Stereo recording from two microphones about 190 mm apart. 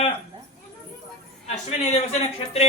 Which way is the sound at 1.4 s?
35° left (ahead or behind).